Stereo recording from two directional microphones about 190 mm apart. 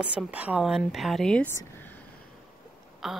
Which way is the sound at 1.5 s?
15° left (ahead or behind).